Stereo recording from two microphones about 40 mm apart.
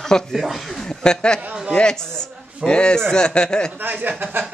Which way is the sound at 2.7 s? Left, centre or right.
Left.